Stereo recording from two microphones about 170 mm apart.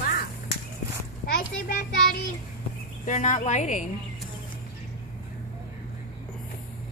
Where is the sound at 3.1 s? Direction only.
45° left (ahead or behind).